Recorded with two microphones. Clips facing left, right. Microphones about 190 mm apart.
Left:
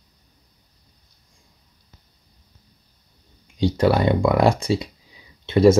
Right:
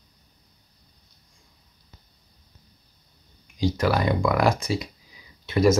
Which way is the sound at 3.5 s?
30° left (ahead or behind).